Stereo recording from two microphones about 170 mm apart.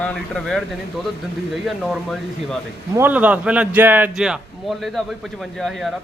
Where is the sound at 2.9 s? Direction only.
10° right (ahead or behind).